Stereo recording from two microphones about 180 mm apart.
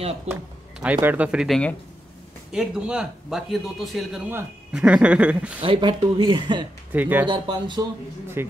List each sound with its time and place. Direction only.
0.3 s speech: 10° right (ahead or behind)
5.6 s speech: 30° right (ahead or behind)
6.9 s speech: 10° right (ahead or behind)
7.2 s speech: 25° right (ahead or behind)
8.4 s speech: 15° right (ahead or behind)